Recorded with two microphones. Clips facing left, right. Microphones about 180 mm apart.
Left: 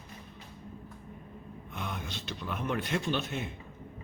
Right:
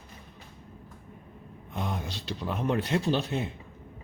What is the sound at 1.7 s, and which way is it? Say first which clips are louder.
Speech: right 5 dB; 35° right (ahead or behind).